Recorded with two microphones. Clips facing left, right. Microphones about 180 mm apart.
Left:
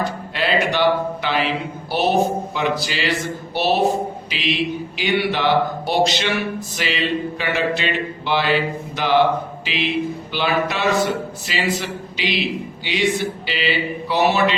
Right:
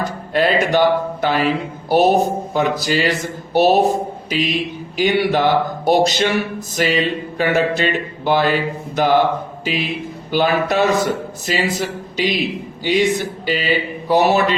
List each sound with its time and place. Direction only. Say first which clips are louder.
0.3 s speech: right 5 dB; 45° right (ahead or behind)
3.5 s a sound: right 7 dB; 45° right (ahead or behind)
4.3 s speech: right 3 dB; 45° right (ahead or behind)